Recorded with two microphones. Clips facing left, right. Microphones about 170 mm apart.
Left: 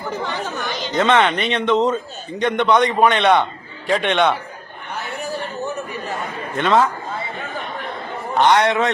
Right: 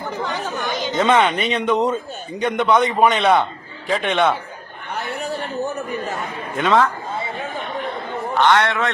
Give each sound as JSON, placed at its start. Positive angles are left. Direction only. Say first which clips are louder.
{"t": 0.7, "sound": "speech", "louder": "even", "side_deg": 0}
{"t": 6.6, "sound": "a man's voice", "louder": "even", "side_deg": 0}
{"t": 8.4, "sound": "a man's voice", "louder": "left 2 dB", "side_deg": 20}